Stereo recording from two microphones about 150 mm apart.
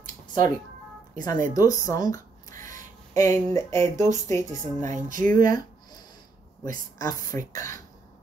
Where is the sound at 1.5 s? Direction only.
20° left (ahead or behind).